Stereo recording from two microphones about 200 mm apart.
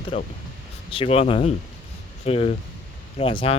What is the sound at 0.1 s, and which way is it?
Speech, 25° left (ahead or behind).